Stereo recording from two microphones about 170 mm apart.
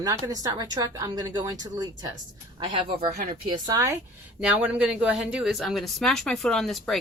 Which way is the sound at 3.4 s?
25° right (ahead or behind).